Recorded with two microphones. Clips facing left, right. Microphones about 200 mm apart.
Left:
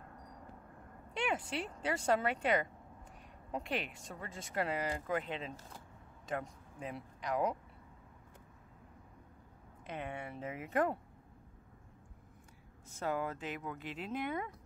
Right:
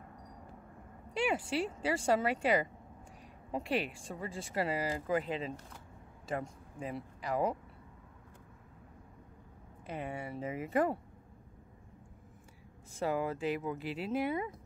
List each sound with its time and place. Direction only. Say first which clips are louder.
1.1 s speech: right 4 dB; 5° right (ahead or behind)
9.8 s speech: right 3 dB; 5° right (ahead or behind)
12.9 s speech: right 4 dB; 5° right (ahead or behind)